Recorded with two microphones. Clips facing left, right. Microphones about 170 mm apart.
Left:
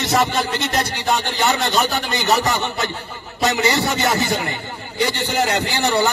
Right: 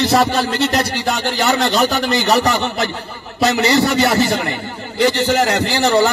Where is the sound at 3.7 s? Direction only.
75° right (ahead or behind).